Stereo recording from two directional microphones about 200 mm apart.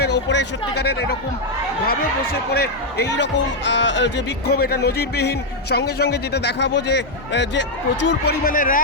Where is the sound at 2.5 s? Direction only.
50° left (ahead or behind).